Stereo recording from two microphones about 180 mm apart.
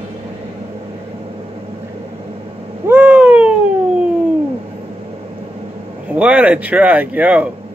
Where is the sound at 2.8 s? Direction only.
10° right (ahead or behind).